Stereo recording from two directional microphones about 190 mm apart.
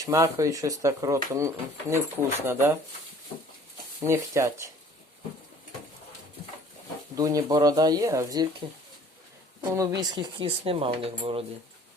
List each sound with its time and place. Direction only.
0.0 s speech: 15° right (ahead or behind)
4.0 s speech: 15° right (ahead or behind)
7.2 s speech: 20° right (ahead or behind)
9.6 s speech: 20° right (ahead or behind)